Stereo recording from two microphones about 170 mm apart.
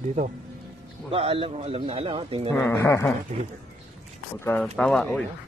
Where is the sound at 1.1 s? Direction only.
35° right (ahead or behind).